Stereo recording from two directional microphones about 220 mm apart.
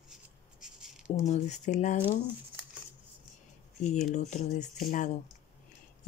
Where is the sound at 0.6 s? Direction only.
5° right (ahead or behind).